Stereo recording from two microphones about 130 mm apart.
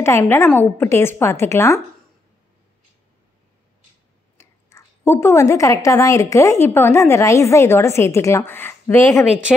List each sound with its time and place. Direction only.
0.0 s a woman's voice: 20° left (ahead or behind)
4.4 s a woman's voice: 20° left (ahead or behind)